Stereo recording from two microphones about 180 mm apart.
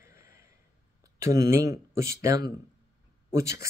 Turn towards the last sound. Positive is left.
turn(degrees=-15)  # may be behind; listen again after turning